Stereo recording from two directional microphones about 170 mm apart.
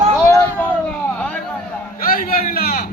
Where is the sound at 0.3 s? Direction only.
20° left (ahead or behind).